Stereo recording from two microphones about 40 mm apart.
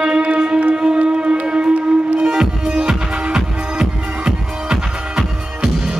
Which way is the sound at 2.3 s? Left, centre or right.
Centre.